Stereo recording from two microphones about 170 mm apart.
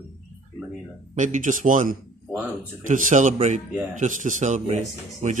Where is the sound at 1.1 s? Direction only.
45° right (ahead or behind).